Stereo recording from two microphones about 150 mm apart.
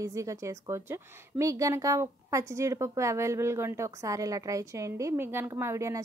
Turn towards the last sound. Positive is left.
turn(degrees=-20)  # may be behind; listen again after turning